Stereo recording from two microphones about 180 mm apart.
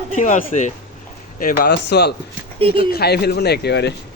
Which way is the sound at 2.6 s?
30° right (ahead or behind).